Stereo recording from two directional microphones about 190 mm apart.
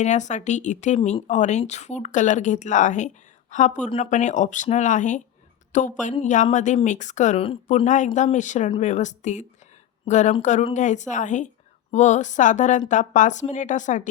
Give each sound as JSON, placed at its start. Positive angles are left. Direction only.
{"t": 0.0, "sound": "speech", "side_deg": 40}